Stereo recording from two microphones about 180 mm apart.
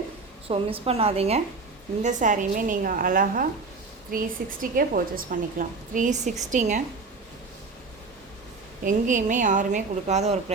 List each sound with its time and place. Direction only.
0.4 s a woman's voice: 30° right (ahead or behind)
8.8 s a woman's voice: 45° right (ahead or behind)